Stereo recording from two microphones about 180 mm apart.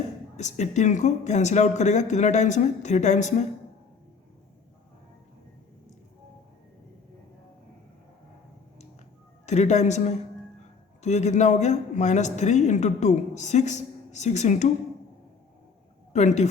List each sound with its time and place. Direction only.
0.3 s a woman's voice: 40° left (ahead or behind)
9.5 s a woman's voice: 40° left (ahead or behind)
16.1 s a woman's voice: 40° left (ahead or behind)